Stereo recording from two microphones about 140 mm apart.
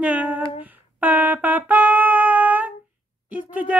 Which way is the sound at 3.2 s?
10° right (ahead or behind).